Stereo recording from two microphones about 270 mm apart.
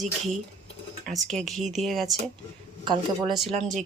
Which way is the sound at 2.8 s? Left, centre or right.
Centre.